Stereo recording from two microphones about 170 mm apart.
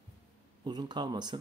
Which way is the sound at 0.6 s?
25° right (ahead or behind).